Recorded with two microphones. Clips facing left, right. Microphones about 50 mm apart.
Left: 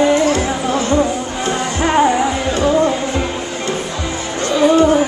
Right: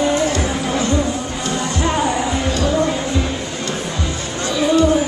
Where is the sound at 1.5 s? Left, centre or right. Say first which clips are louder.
Left 3 dB; left.